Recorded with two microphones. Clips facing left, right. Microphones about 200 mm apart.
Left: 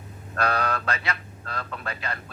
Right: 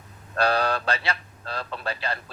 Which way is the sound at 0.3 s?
30° right (ahead or behind).